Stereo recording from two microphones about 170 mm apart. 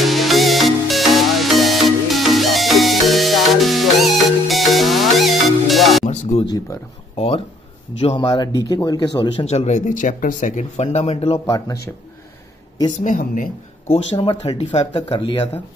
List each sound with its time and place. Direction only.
0.0 s music: centre (ahead or behind)
7.2 s speech: 35° left (ahead or behind)
9.4 s speech: 35° left (ahead or behind)
11.3 s speech: 25° left (ahead or behind)
12.9 s speech: 50° left (ahead or behind)
14.1 s speech: 30° left (ahead or behind)